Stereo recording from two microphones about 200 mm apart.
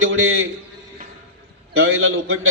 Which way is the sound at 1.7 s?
85° right.